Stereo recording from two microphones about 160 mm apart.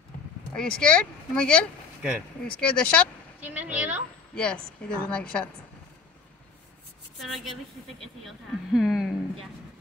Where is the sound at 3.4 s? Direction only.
10° right (ahead or behind).